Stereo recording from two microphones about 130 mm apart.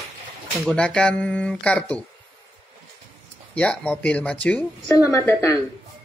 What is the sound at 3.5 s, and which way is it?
Speech, 10° left (ahead or behind).